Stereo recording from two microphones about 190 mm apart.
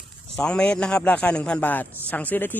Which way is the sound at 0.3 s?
5° left (ahead or behind).